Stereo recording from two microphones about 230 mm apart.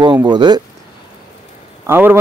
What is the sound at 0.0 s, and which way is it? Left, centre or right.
Speech, centre.